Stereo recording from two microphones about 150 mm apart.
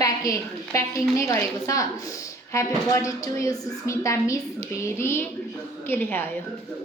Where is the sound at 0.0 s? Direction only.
20° left (ahead or behind).